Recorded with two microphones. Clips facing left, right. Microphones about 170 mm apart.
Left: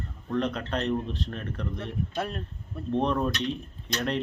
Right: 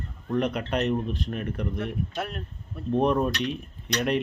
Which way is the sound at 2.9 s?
10° right (ahead or behind).